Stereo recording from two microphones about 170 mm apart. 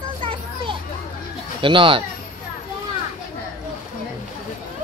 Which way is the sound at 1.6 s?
30° right (ahead or behind).